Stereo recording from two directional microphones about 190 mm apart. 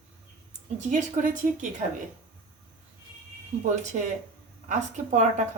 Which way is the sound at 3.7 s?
40° right (ahead or behind).